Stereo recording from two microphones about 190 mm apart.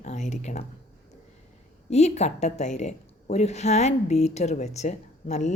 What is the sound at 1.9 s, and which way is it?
A woman's voice, 35° left (ahead or behind).